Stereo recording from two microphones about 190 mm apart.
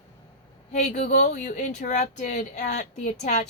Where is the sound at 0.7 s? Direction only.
35° left (ahead or behind).